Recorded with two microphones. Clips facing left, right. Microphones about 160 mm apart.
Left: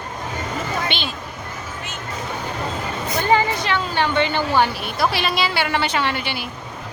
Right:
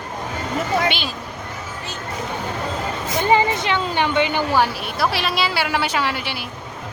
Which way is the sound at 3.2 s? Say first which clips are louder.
Right 1 dB; 20° right (ahead or behind).